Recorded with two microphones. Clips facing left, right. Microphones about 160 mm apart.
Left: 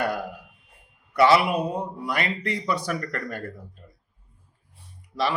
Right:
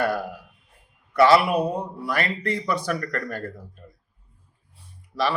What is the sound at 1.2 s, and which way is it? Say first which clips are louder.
A man's voice: right 2 dB; 20° left (ahead or behind).